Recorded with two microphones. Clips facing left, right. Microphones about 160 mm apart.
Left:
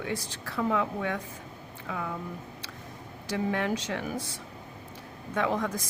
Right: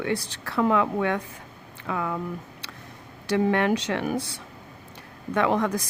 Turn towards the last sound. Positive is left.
turn(degrees=-70)  # may be behind; listen again after turning